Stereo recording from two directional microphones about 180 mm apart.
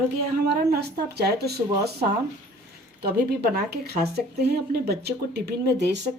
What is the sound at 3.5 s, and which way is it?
A woman's voice, 60° right (ahead or behind).